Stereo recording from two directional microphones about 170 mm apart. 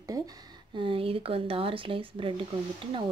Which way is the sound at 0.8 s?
35° right (ahead or behind).